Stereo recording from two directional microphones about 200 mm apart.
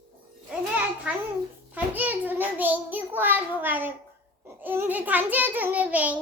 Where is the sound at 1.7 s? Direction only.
10° right (ahead or behind).